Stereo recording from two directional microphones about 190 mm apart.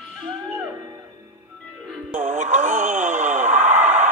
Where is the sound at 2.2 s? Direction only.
40° right (ahead or behind).